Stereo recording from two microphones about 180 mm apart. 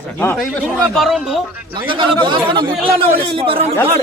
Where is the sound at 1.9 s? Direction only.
25° right (ahead or behind).